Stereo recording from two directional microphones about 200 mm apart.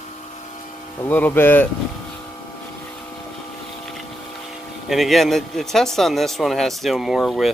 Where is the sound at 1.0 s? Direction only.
10° left (ahead or behind).